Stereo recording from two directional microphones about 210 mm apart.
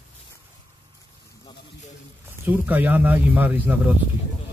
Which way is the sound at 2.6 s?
10° right (ahead or behind).